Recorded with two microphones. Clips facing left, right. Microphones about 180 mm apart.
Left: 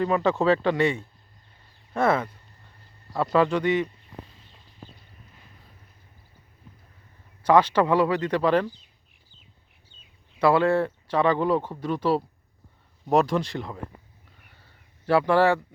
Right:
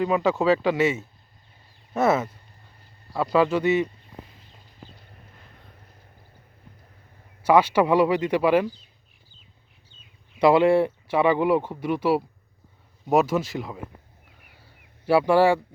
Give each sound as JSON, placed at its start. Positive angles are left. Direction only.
{"t": 0.0, "sound": "speech", "side_deg": -5}
{"t": 7.4, "sound": "speech", "side_deg": -10}
{"t": 10.3, "sound": "speech", "side_deg": -15}
{"t": 15.0, "sound": "speech", "side_deg": -10}